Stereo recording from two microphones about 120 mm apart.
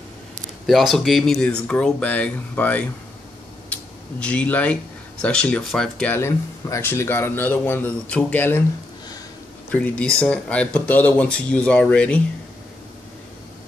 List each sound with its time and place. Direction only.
0.7 s speech: centre (ahead or behind)
6.1 s speech: 20° left (ahead or behind)
9.7 s speech: 10° left (ahead or behind)